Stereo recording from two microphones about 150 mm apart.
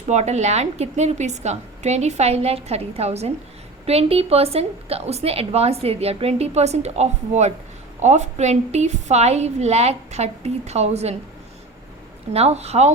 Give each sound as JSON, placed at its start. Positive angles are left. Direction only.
{"t": 0.1, "sound": "a woman's voice", "side_deg": -50}
{"t": 12.3, "sound": "a woman's voice", "side_deg": -45}